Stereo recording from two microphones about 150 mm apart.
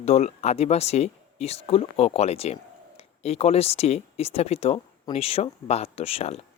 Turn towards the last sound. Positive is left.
turn(degrees=40)  # may be behind; listen again after turning